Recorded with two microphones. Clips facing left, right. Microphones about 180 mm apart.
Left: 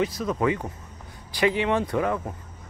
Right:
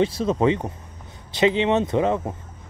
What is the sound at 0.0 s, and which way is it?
Speech, 30° right (ahead or behind).